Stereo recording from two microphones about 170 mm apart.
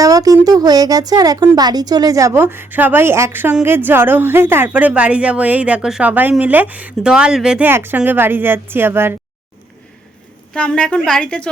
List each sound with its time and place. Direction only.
0.0 s a sound: 20° right (ahead or behind)
0.4 s speech: 20° right (ahead or behind)
10.5 s a woman's voice: 5° left (ahead or behind)